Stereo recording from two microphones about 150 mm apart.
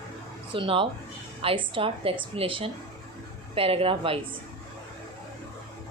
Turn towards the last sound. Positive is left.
turn(degrees=-40)  # may be behind; listen again after turning